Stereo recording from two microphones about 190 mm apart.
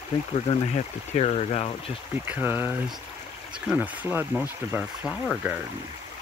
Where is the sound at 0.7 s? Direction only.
35° left (ahead or behind).